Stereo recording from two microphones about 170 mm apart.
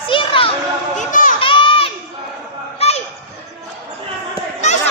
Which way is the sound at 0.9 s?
50° left (ahead or behind).